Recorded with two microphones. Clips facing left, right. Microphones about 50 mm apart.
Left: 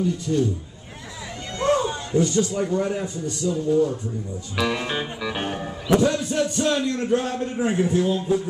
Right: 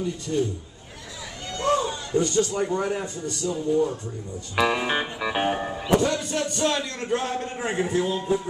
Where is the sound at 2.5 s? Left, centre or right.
Centre.